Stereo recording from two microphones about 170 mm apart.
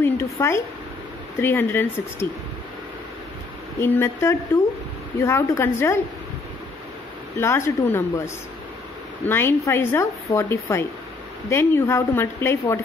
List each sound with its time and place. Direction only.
0.0 s speech: 15° left (ahead or behind)
3.8 s speech: 15° left (ahead or behind)
7.3 s speech: 15° left (ahead or behind)
9.2 s speech: 15° left (ahead or behind)